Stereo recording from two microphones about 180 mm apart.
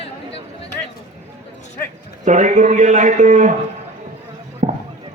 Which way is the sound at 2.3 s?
45° right (ahead or behind).